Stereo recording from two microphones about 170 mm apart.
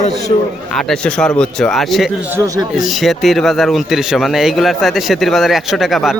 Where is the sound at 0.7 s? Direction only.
5° left (ahead or behind).